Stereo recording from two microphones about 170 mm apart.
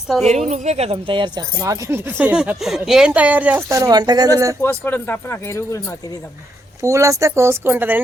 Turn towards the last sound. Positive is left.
turn(degrees=-10)  # may be behind; listen again after turning